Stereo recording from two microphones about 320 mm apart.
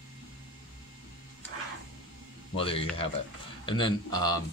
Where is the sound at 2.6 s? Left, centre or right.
Centre.